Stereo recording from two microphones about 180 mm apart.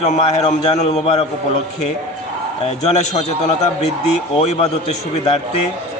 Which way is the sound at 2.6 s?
40° left (ahead or behind).